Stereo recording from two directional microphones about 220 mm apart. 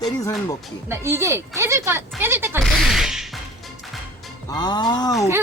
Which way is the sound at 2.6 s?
Centre (ahead or behind).